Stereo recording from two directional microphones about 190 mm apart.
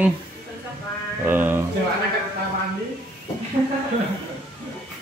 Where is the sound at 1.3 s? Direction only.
10° right (ahead or behind).